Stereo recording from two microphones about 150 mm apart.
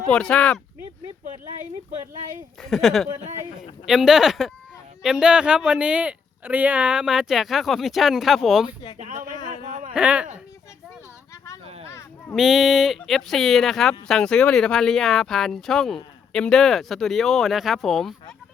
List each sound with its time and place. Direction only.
0.1 s speech: 5° left (ahead or behind)
2.6 s speech: centre (ahead or behind)
9.9 s speech: 10° right (ahead or behind)
11.6 s a sound: 40° right (ahead or behind)
12.3 s speech: centre (ahead or behind)